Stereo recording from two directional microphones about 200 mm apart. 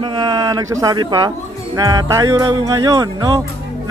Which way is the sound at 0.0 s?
20° right (ahead or behind).